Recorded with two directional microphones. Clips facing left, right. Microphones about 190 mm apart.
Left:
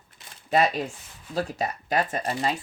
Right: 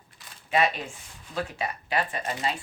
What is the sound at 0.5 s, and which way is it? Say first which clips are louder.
Speech: left 3 dB; 40° left (ahead or behind).